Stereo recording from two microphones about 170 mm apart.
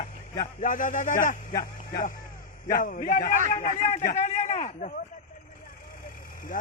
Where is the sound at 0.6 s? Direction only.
50° left (ahead or behind).